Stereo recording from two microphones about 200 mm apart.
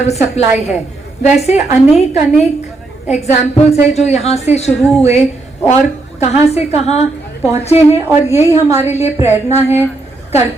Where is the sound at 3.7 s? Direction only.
35° left (ahead or behind).